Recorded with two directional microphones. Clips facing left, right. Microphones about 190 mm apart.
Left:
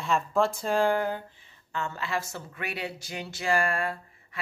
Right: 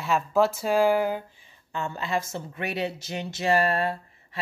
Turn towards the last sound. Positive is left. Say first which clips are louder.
# right 4 dB
turn(degrees=-25)  # may be behind; listen again after turning